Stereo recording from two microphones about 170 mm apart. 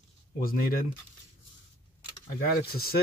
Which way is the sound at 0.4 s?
55° left (ahead or behind).